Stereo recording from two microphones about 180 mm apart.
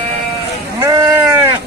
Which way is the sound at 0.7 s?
20° right (ahead or behind).